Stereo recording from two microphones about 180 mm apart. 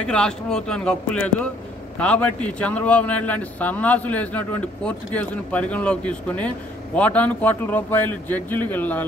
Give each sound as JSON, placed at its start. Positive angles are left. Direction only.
{"t": 0.0, "sound": "a man's voice", "side_deg": 5}